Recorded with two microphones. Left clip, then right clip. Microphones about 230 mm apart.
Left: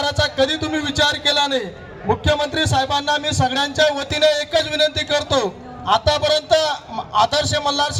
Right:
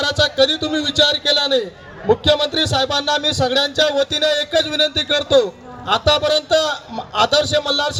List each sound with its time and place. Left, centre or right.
0.0 s a man's voice: left